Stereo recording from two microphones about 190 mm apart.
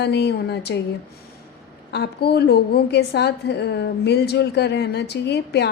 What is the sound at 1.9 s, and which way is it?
A woman's voice, 60° left (ahead or behind).